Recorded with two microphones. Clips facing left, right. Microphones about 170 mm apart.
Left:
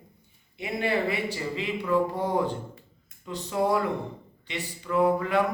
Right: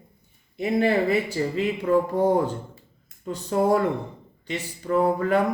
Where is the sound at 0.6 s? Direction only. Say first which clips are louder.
Right 6 dB; 40° right (ahead or behind).